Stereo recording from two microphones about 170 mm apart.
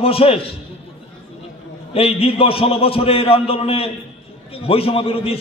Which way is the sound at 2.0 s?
35° left (ahead or behind).